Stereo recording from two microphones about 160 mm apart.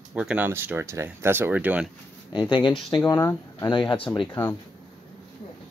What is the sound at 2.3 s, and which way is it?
Speech, 30° left (ahead or behind).